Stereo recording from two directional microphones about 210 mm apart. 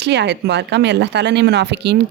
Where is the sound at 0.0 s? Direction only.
55° right (ahead or behind).